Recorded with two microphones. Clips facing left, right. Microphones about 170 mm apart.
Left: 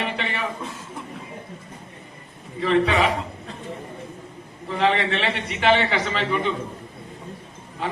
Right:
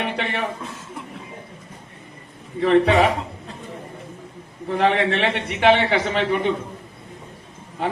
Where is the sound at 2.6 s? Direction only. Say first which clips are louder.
Right 4 dB; 55° right (ahead or behind).